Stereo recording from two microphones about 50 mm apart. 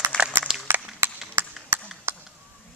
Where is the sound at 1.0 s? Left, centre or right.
Right.